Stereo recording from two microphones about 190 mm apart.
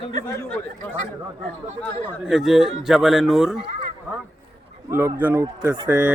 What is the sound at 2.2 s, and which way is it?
A man's voice, 5° right (ahead or behind).